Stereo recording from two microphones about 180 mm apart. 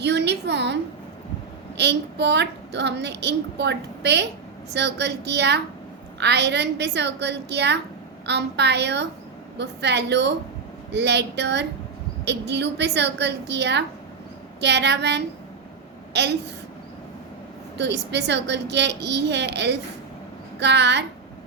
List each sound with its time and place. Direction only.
0.0 s a child's voice: 70° right (ahead or behind)
17.7 s a child's voice: 70° right (ahead or behind)